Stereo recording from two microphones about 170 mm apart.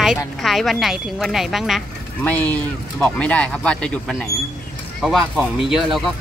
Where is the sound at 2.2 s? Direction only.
10° left (ahead or behind).